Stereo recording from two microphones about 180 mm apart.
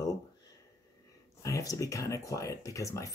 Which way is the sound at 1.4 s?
20° left (ahead or behind).